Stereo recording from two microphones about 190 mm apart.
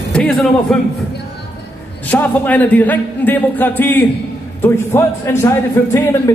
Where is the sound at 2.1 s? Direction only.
10° left (ahead or behind).